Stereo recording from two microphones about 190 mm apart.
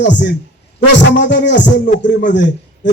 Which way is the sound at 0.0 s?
65° left (ahead or behind).